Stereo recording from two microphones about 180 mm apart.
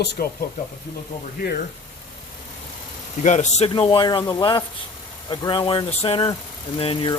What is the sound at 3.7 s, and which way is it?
Speech, 25° left (ahead or behind).